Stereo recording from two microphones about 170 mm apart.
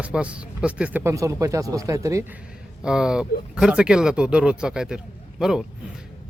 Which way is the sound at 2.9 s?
5° right (ahead or behind).